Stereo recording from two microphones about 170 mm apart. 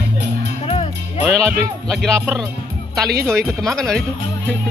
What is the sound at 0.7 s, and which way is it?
Music, 35° left (ahead or behind).